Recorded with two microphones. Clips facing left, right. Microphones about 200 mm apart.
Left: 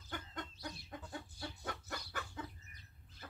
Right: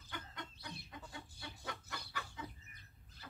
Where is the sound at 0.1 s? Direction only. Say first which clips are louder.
Left 3 dB; 50° left (ahead or behind).